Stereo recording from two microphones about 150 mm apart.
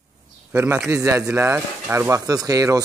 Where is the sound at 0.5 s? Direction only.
10° right (ahead or behind).